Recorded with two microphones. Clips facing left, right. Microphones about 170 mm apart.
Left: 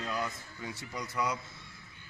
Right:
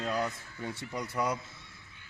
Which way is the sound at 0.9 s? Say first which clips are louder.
Right 2 dB; 30° right (ahead or behind).